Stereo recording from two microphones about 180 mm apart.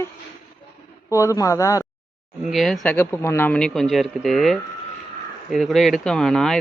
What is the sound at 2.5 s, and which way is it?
Speech, centre (ahead or behind).